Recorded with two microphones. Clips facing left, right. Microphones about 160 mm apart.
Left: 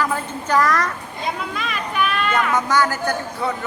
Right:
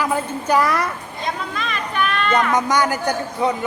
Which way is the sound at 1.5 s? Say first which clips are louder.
Even; 5° left (ahead or behind).